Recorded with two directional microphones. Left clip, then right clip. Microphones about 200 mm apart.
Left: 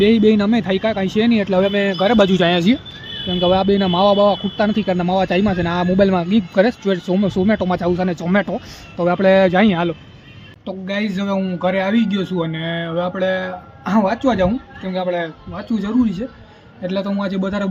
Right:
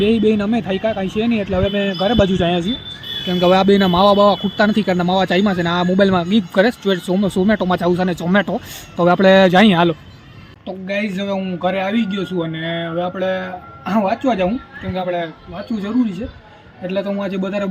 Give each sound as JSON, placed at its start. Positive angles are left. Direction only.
{"t": 0.0, "sound": "a man's voice", "side_deg": 15}
{"t": 3.2, "sound": "a man's voice", "side_deg": -10}
{"t": 10.7, "sound": "a man's voice", "side_deg": 15}
{"t": 16.8, "sound": "a man's voice", "side_deg": 15}